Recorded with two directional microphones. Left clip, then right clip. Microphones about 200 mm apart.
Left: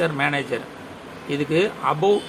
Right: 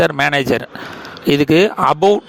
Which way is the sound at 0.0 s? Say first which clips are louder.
Right 8 dB; 55° right (ahead or behind).